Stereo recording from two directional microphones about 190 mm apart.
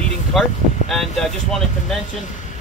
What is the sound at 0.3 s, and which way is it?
Speech, centre (ahead or behind).